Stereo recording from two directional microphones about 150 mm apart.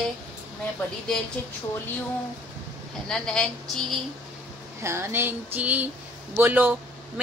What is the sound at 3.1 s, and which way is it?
Speech, 5° left (ahead or behind).